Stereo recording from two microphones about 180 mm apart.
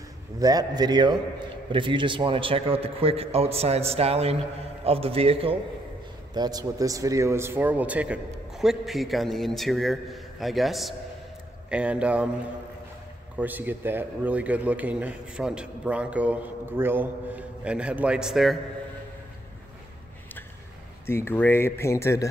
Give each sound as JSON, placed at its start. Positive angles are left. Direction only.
{"t": 0.4, "sound": "a man's voice", "side_deg": -20}
{"t": 13.4, "sound": "a man's voice", "side_deg": -10}
{"t": 21.0, "sound": "speech", "side_deg": 15}